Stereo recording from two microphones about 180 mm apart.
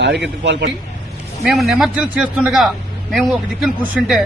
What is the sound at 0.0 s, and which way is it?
Speech, 75° right (ahead or behind).